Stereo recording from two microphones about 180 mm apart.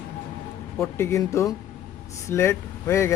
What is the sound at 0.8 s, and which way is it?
Speech, 15° left (ahead or behind).